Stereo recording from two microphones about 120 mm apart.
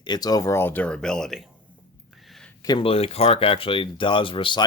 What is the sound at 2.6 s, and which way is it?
Speech, 50° left (ahead or behind).